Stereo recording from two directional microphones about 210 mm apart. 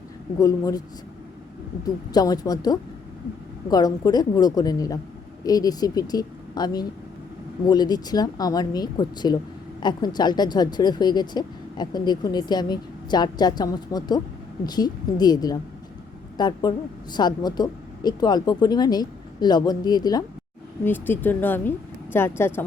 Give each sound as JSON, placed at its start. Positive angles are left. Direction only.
{"t": 0.3, "sound": "speech", "side_deg": 15}
{"t": 1.8, "sound": "a woman's voice", "side_deg": 20}